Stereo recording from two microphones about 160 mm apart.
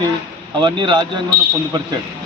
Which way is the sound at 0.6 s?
30° right (ahead or behind).